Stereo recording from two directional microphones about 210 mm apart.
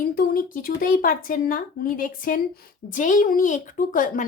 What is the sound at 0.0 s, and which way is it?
A woman's voice, 45° left (ahead or behind).